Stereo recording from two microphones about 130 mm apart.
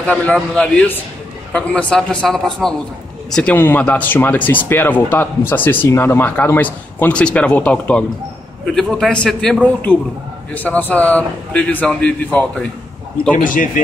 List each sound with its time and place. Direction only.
0.0 s a man's voice: 10° left (ahead or behind)
13.4 s speech: 90° left